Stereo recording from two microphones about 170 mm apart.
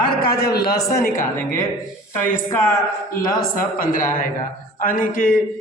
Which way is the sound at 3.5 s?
55° left (ahead or behind).